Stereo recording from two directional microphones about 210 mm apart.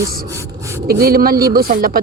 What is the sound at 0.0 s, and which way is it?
Speech, 45° right (ahead or behind).